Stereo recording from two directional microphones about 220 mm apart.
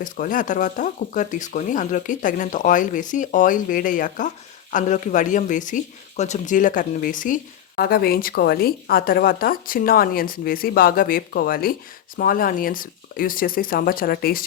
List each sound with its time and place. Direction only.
0.0 s a woman's voice: 35° left (ahead or behind)